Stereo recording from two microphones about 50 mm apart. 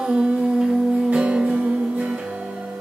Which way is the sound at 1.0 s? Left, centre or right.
Centre.